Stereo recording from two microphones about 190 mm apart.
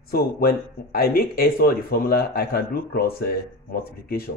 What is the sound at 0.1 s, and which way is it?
Speech, 50° left (ahead or behind).